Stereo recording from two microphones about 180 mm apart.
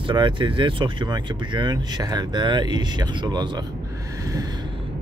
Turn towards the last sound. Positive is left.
turn(degrees=-25)  # may be behind; listen again after turning